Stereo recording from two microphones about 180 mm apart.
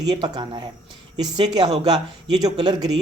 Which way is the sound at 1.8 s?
20° right (ahead or behind).